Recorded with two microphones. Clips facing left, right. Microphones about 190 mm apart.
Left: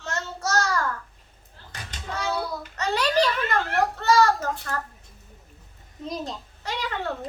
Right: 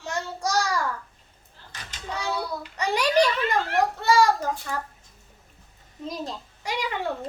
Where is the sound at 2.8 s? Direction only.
15° right (ahead or behind).